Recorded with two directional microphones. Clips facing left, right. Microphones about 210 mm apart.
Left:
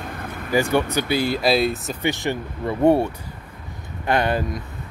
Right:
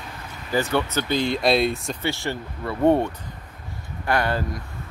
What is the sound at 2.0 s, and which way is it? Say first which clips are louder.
Speech: left 4 dB; 15° left (ahead or behind).